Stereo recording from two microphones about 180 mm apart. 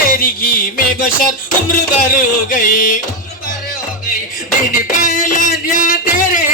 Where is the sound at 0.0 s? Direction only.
55° left (ahead or behind).